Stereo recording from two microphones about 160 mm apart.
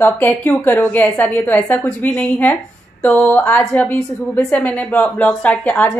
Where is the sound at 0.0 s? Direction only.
10° left (ahead or behind).